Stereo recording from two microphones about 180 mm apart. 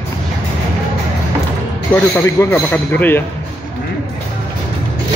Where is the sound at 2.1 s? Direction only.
10° left (ahead or behind).